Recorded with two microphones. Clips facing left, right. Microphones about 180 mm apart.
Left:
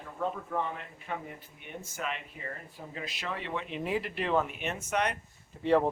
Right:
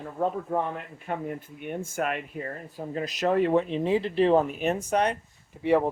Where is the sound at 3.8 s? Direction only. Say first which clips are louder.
Right 9 dB; 30° right (ahead or behind).